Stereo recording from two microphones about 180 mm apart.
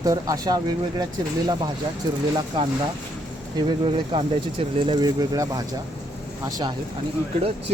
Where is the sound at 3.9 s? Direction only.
30° right (ahead or behind).